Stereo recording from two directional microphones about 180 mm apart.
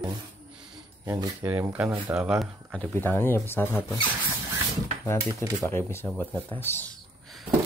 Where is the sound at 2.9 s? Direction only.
10° left (ahead or behind).